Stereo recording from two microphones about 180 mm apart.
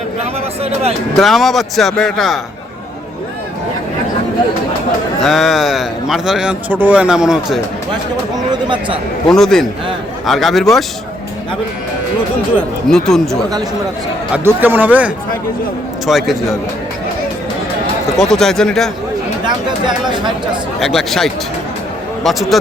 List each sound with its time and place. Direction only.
0.2 s a sound: 35° right (ahead or behind)
1.1 s a man's voice: centre (ahead or behind)
5.2 s a man's voice: centre (ahead or behind)
9.3 s a man's voice: centre (ahead or behind)
12.9 s a man's voice: 5° left (ahead or behind)
14.3 s a man's voice: 10° right (ahead or behind)
18.2 s a man's voice: centre (ahead or behind)
19.5 s speech: 25° right (ahead or behind)
20.7 s a man's voice: centre (ahead or behind)